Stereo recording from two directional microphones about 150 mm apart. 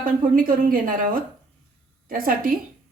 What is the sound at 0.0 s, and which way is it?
A woman's voice, 70° right (ahead or behind).